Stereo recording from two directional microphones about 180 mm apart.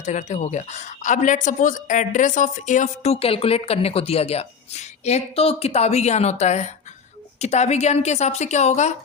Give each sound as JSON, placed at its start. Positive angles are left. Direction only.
{"t": 0.0, "sound": "a woman's voice", "side_deg": 40}